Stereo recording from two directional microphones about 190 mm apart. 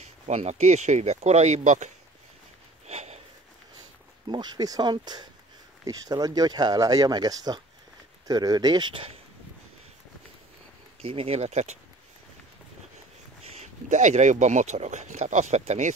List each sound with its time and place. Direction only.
0.0 s speech: 35° right (ahead or behind)
2.9 s sniff: 35° right (ahead or behind)
4.3 s speech: 20° right (ahead or behind)
11.0 s speech: 30° right (ahead or behind)
13.6 s speech: 40° right (ahead or behind)